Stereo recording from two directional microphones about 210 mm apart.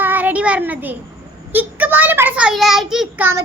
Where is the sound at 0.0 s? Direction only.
10° right (ahead or behind).